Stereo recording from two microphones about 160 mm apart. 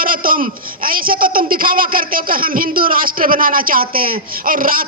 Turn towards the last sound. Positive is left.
turn(degrees=-60)  # may be behind; listen again after turning